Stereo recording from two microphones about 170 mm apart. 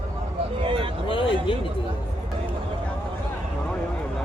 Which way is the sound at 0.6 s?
30° right (ahead or behind).